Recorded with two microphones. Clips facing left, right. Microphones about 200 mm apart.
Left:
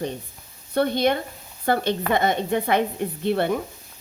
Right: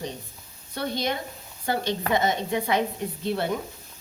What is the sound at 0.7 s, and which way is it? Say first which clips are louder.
A woman's voice: left 8 dB; 60° left (ahead or behind).